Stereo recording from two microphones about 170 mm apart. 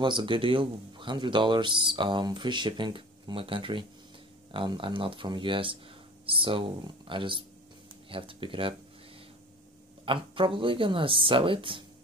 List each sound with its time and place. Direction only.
0.0 s speech: 30° right (ahead or behind)
10.0 s speech: 30° right (ahead or behind)